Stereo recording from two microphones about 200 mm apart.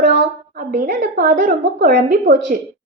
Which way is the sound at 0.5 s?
40° right (ahead or behind).